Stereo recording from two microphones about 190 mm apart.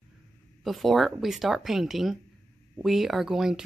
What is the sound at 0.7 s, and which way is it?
Speech, centre (ahead or behind).